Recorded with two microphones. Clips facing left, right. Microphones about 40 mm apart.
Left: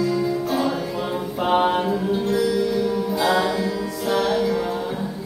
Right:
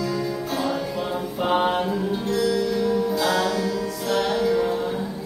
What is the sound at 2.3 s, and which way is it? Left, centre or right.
Music, centre.